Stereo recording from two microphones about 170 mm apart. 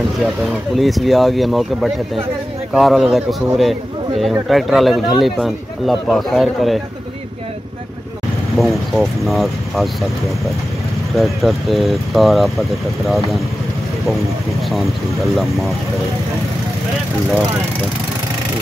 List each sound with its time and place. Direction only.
0.2 s speech: centre (ahead or behind)
8.5 s speech: centre (ahead or behind)
11.1 s speech: centre (ahead or behind)